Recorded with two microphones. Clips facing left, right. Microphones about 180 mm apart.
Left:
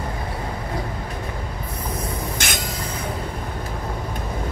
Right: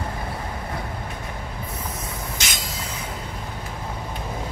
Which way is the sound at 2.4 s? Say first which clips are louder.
Left 5 dB; 55° left (ahead or behind).